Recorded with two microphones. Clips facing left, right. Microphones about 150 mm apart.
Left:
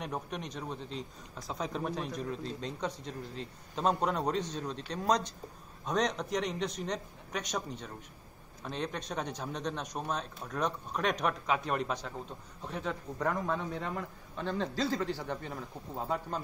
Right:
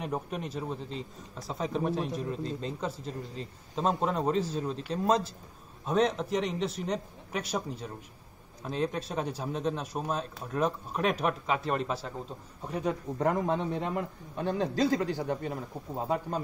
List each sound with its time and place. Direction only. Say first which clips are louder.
0.0 s a man's voice: right 4 dB; 5° right (ahead or behind)
13.2 s a man's voice: right 5 dB; 20° right (ahead or behind)
15.0 s a man's voice: right 5 dB; 50° right (ahead or behind)
15.9 s a man's voice: right 4 dB; 10° right (ahead or behind)